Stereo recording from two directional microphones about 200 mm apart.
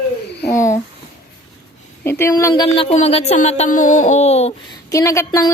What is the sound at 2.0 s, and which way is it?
A woman's voice, 10° left (ahead or behind).